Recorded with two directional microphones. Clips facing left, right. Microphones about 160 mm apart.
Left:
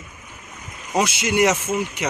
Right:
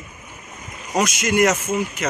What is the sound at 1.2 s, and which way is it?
Speech, 10° left (ahead or behind).